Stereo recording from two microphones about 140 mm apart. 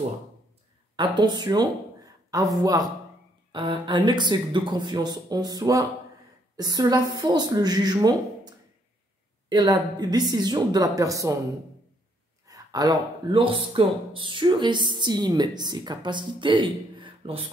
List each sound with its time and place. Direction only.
0.9 s a woman's voice: 35° right (ahead or behind)
12.4 s a sound: 25° right (ahead or behind)
13.4 s a woman's voice: 40° right (ahead or behind)